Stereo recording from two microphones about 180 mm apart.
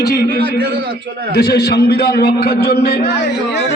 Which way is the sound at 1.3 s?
60° left (ahead or behind).